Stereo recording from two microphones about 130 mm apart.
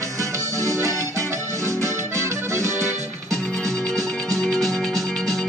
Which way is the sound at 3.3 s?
5° left (ahead or behind).